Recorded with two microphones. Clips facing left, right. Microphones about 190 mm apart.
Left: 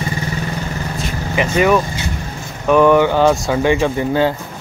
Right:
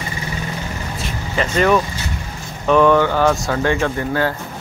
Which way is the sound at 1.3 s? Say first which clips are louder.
Left 2 dB; 15° left (ahead or behind).